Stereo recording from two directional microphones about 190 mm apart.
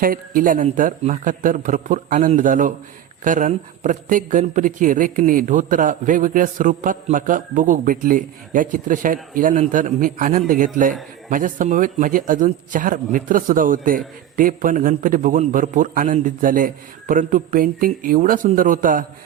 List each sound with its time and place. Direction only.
0.0 s a woman's voice: 45° right (ahead or behind)